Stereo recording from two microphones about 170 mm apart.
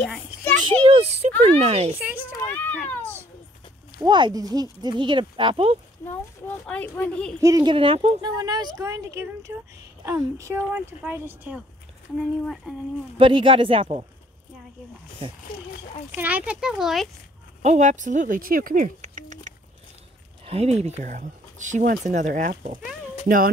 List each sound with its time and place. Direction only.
0.0 s children playing: 10° left (ahead or behind)
0.7 s a child's voice: 35° right (ahead or behind)
2.0 s speech: 10° right (ahead or behind)
2.4 s speech: 10° left (ahead or behind)
4.0 s speech: 25° right (ahead or behind)
6.6 s speech: 5° left (ahead or behind)
7.3 s speech: 20° right (ahead or behind); by 12.7 s 5° right (ahead or behind)
13.2 s speech: 30° right (ahead or behind)
15.2 s speech: 30° right (ahead or behind)
16.2 s speech: 10° right (ahead or behind)
17.6 s speech: 45° right (ahead or behind)
20.4 s speech: 35° right (ahead or behind)
23.2 s speech: 55° right (ahead or behind)